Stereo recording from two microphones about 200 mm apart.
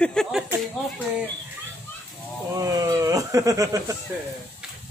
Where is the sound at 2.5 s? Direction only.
15° right (ahead or behind).